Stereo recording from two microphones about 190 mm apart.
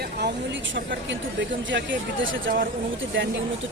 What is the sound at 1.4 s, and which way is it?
Speech, 75° right (ahead or behind).